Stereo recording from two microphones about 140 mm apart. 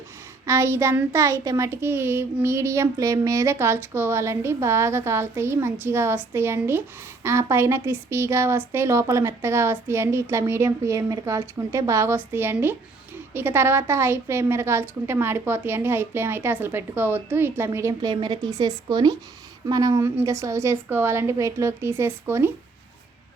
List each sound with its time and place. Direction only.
0.4 s a child's voice: 20° right (ahead or behind)